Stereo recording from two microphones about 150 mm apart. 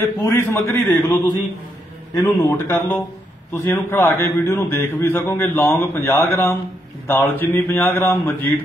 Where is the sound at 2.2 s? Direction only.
20° left (ahead or behind).